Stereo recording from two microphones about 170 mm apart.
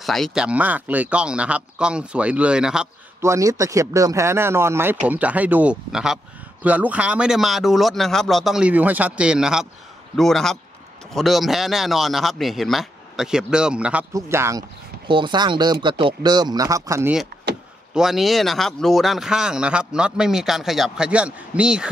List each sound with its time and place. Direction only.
0.0 s speech: centre (ahead or behind)
3.2 s speech: 15° right (ahead or behind)
14.1 s speech: 15° right (ahead or behind)
15.0 s speech: 30° right (ahead or behind)
17.9 s speech: centre (ahead or behind)